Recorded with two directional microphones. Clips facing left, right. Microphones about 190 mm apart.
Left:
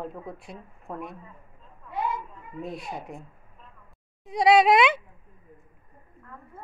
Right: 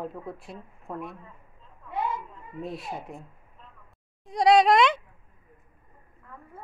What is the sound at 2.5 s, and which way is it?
Speech, centre (ahead or behind).